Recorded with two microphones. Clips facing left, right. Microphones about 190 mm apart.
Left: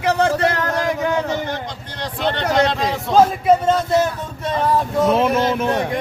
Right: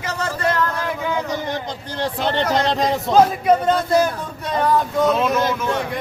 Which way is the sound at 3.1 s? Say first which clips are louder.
Left 1 dB; 5° left (ahead or behind).